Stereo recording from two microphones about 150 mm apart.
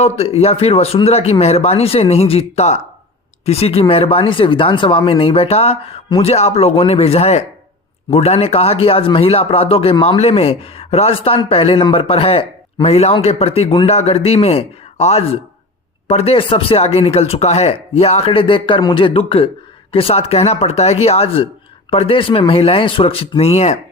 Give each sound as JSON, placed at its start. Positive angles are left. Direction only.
{"t": 0.0, "sound": "a man's voice", "side_deg": 45}